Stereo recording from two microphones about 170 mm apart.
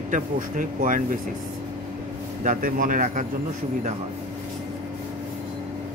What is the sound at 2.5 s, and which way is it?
Speech, 55° right (ahead or behind).